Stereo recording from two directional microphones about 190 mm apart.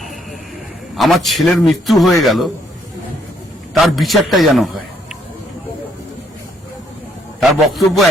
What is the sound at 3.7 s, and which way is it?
Speech, centre (ahead or behind).